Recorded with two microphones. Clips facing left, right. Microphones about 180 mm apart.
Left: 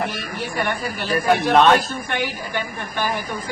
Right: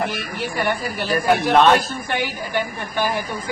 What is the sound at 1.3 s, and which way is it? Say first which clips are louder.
Speech: even; centre (ahead or behind).